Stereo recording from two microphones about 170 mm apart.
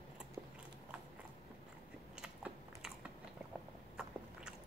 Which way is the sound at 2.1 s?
5° right (ahead or behind).